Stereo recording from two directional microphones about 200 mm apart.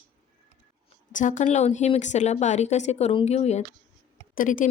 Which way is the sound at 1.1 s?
40° left (ahead or behind).